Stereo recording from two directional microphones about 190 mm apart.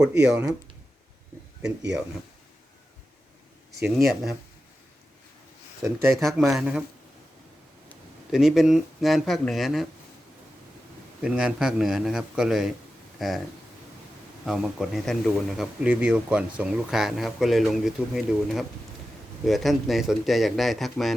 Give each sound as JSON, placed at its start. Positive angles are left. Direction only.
{"t": 0.0, "sound": "speech", "side_deg": -10}
{"t": 3.8, "sound": "speech", "side_deg": 0}
{"t": 5.8, "sound": "speech", "side_deg": -15}
{"t": 6.1, "sound": "speech", "side_deg": 0}
{"t": 8.3, "sound": "speech", "side_deg": -5}
{"t": 11.2, "sound": "speech", "side_deg": -5}
{"t": 14.4, "sound": "speech", "side_deg": 0}